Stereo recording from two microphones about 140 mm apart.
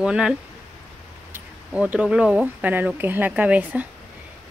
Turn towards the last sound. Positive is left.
turn(degrees=-10)  # may be behind; listen again after turning